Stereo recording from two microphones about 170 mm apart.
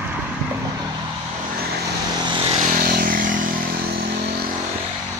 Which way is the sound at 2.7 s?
60° right (ahead or behind).